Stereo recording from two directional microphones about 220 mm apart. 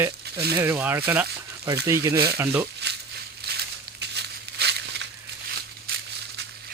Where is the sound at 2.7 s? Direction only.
50° right (ahead or behind).